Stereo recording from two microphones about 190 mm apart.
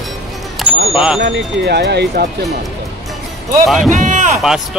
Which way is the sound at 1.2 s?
60° right (ahead or behind).